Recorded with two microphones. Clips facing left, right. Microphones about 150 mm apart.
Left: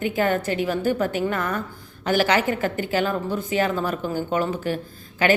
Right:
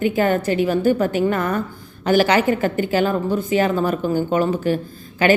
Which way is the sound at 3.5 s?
15° right (ahead or behind).